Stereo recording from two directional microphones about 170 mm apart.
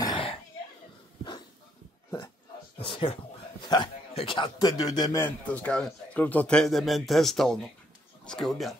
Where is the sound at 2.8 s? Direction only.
30° left (ahead or behind).